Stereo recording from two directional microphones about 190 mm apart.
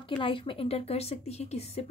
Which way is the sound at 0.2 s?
25° left (ahead or behind).